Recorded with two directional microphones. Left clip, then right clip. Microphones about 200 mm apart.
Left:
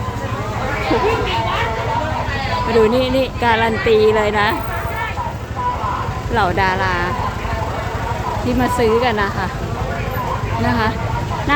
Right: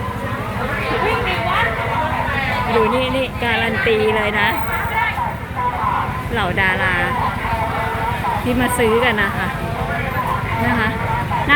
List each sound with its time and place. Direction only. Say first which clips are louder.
2.7 s speech: left 4 dB; 30° left (ahead or behind)
6.3 s speech: left 2 dB; 15° left (ahead or behind)
8.8 s speech: even; 10° left (ahead or behind)